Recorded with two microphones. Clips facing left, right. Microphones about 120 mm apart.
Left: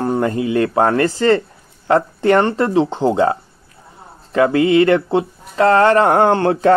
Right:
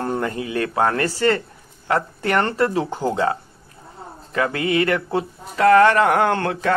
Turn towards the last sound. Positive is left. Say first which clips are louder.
# left 7 dB
turn(degrees=30)  # may be behind; listen again after turning